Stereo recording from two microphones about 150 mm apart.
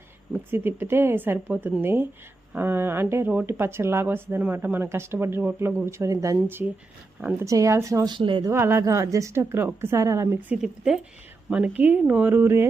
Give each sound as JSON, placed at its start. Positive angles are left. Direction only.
{"t": 0.3, "sound": "speech", "side_deg": -15}
{"t": 7.4, "sound": "a woman's voice", "side_deg": -20}
{"t": 8.4, "sound": "speech", "side_deg": -15}
{"t": 10.6, "sound": "speech", "side_deg": -5}